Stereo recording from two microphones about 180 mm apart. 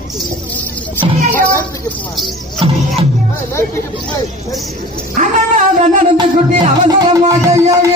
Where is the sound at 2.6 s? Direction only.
30° right (ahead or behind).